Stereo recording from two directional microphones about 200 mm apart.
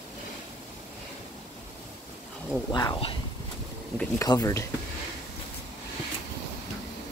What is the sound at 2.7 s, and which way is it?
Speech, 20° left (ahead or behind).